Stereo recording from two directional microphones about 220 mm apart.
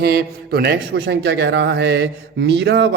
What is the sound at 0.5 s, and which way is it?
Speech, 45° right (ahead or behind).